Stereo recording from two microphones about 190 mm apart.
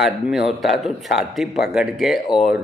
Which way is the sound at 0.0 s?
Centre (ahead or behind).